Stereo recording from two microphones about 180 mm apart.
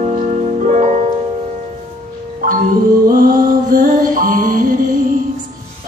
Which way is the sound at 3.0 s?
50° right (ahead or behind).